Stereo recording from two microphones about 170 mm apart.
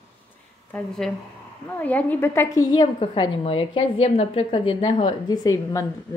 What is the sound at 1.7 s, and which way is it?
A woman's voice, 10° left (ahead or behind).